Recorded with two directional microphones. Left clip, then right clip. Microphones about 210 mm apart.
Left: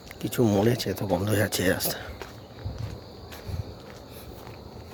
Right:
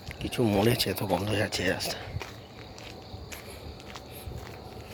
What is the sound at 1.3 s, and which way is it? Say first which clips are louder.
Speech: left 3 dB; 30° left (ahead or behind).